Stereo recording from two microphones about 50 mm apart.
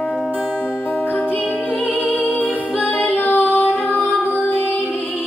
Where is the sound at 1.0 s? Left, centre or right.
Left.